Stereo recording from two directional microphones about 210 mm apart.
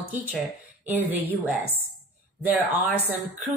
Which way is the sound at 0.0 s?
40° right (ahead or behind).